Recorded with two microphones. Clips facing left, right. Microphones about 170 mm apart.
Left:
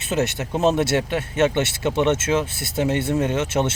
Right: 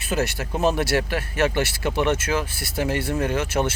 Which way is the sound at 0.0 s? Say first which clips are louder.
Left 2 dB; 20° left (ahead or behind).